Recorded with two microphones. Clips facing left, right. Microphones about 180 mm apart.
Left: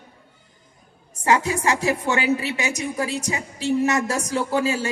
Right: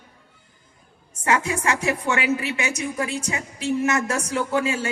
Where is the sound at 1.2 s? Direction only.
35° left (ahead or behind).